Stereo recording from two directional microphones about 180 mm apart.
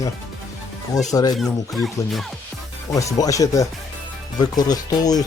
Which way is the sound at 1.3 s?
Centre (ahead or behind).